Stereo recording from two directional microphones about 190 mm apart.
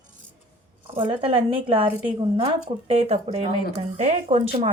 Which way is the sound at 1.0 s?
30° right (ahead or behind).